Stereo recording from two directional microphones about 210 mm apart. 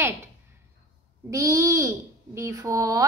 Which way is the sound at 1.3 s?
15° right (ahead or behind).